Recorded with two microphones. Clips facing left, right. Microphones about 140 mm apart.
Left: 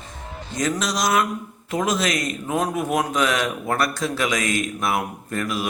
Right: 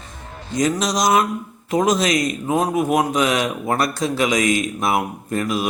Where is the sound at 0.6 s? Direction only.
15° right (ahead or behind).